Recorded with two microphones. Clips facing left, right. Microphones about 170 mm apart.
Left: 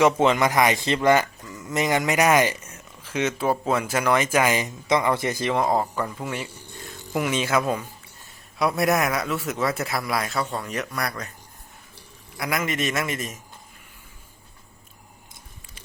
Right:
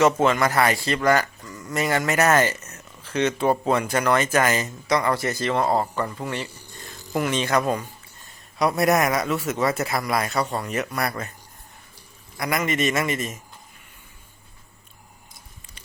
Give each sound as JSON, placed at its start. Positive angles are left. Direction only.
{"t": 0.0, "sound": "speech", "side_deg": 20}
{"t": 12.4, "sound": "speech", "side_deg": 0}